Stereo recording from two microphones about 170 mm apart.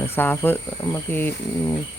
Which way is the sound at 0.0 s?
10° left (ahead or behind).